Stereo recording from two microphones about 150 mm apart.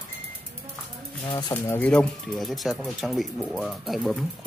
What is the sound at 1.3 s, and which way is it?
Speech, 30° left (ahead or behind).